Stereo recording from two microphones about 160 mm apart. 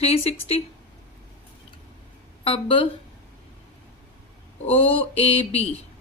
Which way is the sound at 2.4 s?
35° left (ahead or behind).